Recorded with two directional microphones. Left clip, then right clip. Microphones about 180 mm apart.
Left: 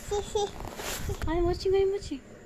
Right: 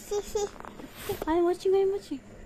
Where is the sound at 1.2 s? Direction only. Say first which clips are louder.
Right 2 dB; 20° right (ahead or behind).